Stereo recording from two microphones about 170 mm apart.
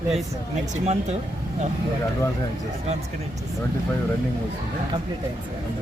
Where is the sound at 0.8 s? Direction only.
40° right (ahead or behind).